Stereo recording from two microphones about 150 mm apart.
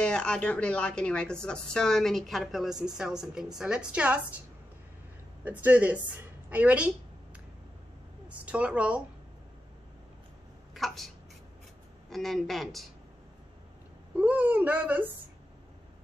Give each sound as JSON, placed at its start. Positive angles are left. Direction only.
{"t": 0.0, "sound": "speech", "side_deg": 5}
{"t": 5.4, "sound": "speech", "side_deg": -10}
{"t": 8.5, "sound": "speech", "side_deg": -10}
{"t": 10.7, "sound": "speech", "side_deg": 0}
{"t": 12.1, "sound": "speech", "side_deg": 0}
{"t": 14.1, "sound": "speech", "side_deg": -10}